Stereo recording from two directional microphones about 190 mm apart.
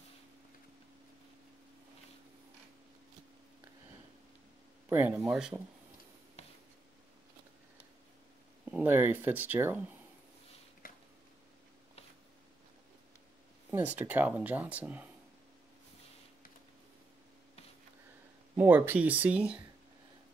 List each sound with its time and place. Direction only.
4.8 s speech: 10° right (ahead or behind)
8.6 s speech: 10° right (ahead or behind)
10.8 s a sound: 50° left (ahead or behind)
13.7 s speech: 10° right (ahead or behind)
18.6 s speech: 10° right (ahead or behind)